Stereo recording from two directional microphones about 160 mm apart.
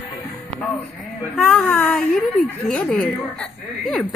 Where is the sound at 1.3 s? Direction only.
5° left (ahead or behind).